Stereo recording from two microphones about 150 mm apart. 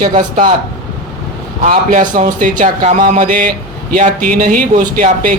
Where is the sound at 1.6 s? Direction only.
55° right (ahead or behind).